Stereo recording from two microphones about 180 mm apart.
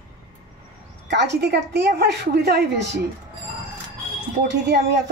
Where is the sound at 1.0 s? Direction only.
70° right (ahead or behind).